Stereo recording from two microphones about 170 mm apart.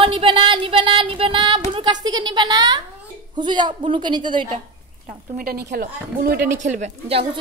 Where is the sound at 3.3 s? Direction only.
25° right (ahead or behind).